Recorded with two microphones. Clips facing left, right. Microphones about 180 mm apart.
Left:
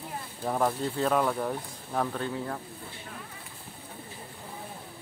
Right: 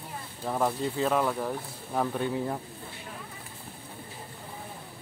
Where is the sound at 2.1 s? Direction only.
15° right (ahead or behind).